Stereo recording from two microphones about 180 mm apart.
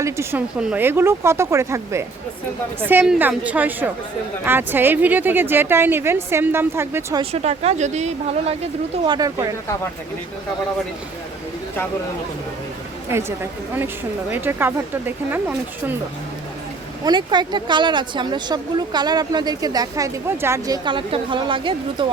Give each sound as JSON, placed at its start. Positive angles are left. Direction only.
{"t": 0.0, "sound": "a woman's voice", "side_deg": -15}
{"t": 7.2, "sound": "speech", "side_deg": -35}
{"t": 9.1, "sound": "speech", "side_deg": -20}
{"t": 13.1, "sound": "a woman's voice", "side_deg": -15}
{"t": 17.1, "sound": "speech", "side_deg": -25}